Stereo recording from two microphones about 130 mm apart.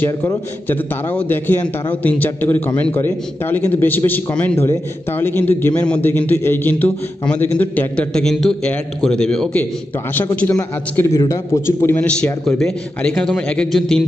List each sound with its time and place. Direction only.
0.0 s a man's voice: 15° left (ahead or behind)
11.1 s a man's voice: 25° left (ahead or behind)
12.4 s a man's voice: 5° left (ahead or behind)